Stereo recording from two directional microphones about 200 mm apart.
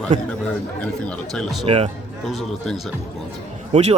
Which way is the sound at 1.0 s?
5° left (ahead or behind).